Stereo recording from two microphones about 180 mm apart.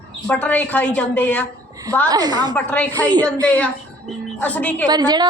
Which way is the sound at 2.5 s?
10° left (ahead or behind).